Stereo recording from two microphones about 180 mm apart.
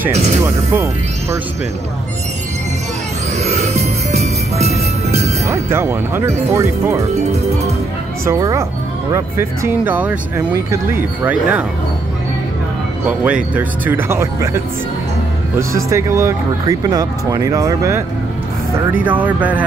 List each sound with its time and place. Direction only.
3.3 s music: 40° right (ahead or behind)
5.5 s speech: 15° right (ahead or behind)
8.3 s speech: 15° right (ahead or behind)
13.0 s speech: 10° right (ahead or behind)
15.7 s speech: 15° right (ahead or behind)
19.0 s speech: 10° right (ahead or behind)